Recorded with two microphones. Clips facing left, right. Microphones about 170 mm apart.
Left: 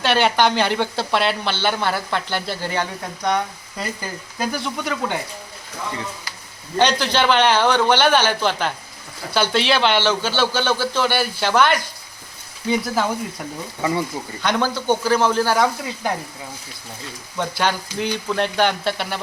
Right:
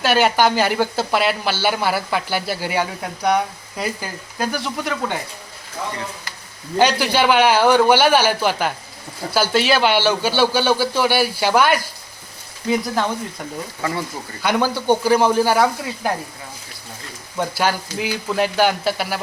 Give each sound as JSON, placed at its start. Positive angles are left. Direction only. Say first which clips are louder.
{"t": 0.0, "sound": "speech", "louder": "right 1 dB", "side_deg": -5}
{"t": 6.7, "sound": "speech", "louder": "right 2 dB", "side_deg": -10}
{"t": 13.8, "sound": "speech", "louder": "left 3 dB", "side_deg": 20}
{"t": 14.4, "sound": "speech", "louder": "right 2 dB", "side_deg": -10}
{"t": 17.3, "sound": "speech", "louder": "right 2 dB", "side_deg": -10}